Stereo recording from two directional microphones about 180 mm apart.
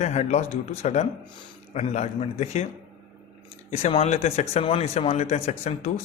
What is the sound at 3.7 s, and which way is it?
Speech, 35° left (ahead or behind).